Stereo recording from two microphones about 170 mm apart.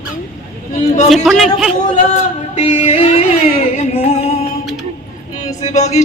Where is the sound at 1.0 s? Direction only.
Centre (ahead or behind).